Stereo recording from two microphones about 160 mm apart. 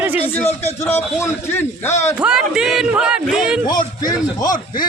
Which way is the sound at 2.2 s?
5° right (ahead or behind).